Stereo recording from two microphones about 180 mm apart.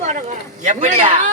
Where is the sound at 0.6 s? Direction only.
40° right (ahead or behind).